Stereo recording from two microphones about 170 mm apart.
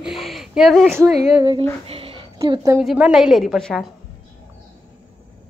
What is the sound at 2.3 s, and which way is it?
Speech, 25° right (ahead or behind).